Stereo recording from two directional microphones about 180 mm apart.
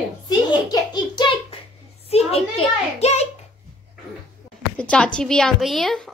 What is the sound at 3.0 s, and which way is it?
Hands, 35° left (ahead or behind).